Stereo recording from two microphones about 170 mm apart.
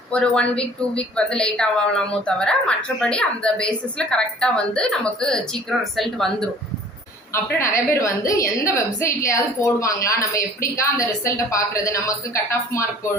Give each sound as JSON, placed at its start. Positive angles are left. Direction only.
{"t": 0.1, "sound": "a woman's voice", "side_deg": 5}
{"t": 7.3, "sound": "a woman's voice", "side_deg": 15}